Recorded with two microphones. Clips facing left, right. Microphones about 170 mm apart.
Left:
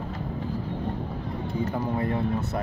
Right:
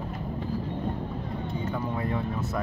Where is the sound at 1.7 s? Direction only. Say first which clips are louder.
Left 2 dB; 30° left (ahead or behind).